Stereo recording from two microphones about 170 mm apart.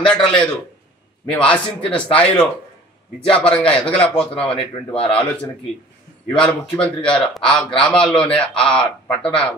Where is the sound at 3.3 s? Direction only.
35° left (ahead or behind).